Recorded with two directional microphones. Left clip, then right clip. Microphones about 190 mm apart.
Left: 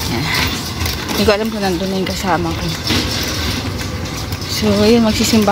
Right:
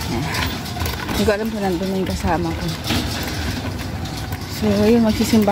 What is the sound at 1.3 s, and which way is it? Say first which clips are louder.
Speech: left 5 dB; 5° right (ahead or behind).